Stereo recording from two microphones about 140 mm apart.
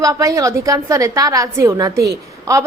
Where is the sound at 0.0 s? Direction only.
25° right (ahead or behind).